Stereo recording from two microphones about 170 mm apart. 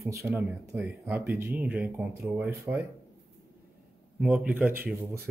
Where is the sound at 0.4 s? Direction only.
10° right (ahead or behind).